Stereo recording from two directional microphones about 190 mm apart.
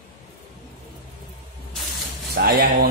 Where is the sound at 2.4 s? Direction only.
55° right (ahead or behind).